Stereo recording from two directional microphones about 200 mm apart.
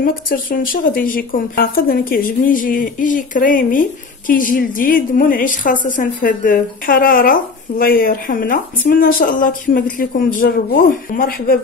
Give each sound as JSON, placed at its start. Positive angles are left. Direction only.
{"t": 0.0, "sound": "a woman's voice", "side_deg": 45}